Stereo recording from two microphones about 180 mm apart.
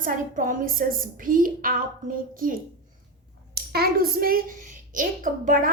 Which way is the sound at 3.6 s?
60° right (ahead or behind).